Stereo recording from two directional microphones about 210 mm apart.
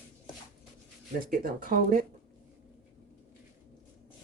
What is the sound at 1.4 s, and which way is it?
Speech, 40° right (ahead or behind).